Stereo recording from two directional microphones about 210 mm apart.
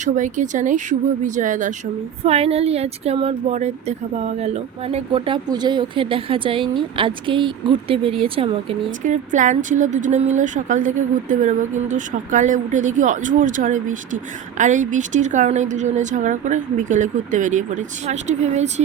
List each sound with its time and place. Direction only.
0.0 s speech: 35° right (ahead or behind)
9.0 s speech: 35° right (ahead or behind)